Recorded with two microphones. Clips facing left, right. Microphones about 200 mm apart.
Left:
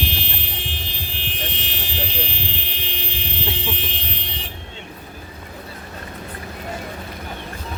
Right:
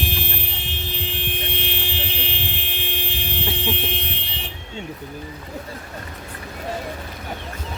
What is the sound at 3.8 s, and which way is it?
Car alarm, 55° right (ahead or behind).